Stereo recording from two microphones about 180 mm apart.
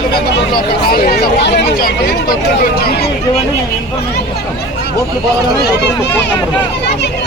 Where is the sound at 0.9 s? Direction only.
60° left (ahead or behind).